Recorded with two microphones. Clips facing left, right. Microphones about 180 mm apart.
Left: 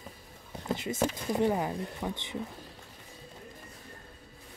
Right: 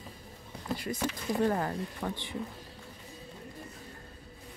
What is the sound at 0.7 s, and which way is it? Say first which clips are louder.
Speech: left 3 dB; 20° left (ahead or behind).